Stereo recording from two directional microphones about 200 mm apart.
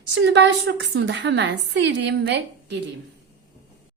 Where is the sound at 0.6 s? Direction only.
65° right (ahead or behind).